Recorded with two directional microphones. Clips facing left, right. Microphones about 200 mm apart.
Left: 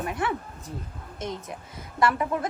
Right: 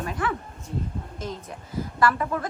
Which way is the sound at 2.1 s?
15° left (ahead or behind).